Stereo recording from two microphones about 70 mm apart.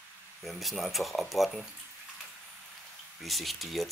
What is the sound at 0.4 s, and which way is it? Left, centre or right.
Speech, centre.